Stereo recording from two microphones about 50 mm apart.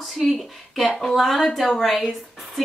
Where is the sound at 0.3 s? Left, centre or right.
Centre.